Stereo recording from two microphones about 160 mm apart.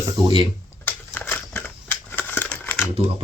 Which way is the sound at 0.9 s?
10° left (ahead or behind).